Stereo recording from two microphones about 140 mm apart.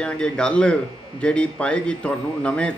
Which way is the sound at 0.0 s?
5° left (ahead or behind).